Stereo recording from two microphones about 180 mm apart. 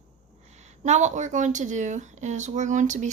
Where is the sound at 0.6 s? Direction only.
40° right (ahead or behind).